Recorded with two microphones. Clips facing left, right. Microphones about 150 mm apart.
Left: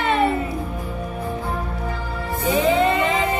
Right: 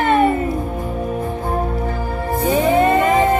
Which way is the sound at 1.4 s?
45° right (ahead or behind).